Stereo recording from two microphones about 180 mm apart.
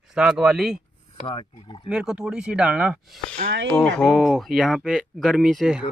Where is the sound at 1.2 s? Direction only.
30° left (ahead or behind).